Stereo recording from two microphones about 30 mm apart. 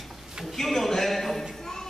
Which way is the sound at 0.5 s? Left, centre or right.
Centre.